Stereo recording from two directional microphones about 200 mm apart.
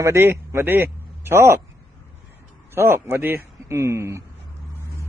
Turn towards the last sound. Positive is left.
turn(degrees=-15)  # may be behind; listen again after turning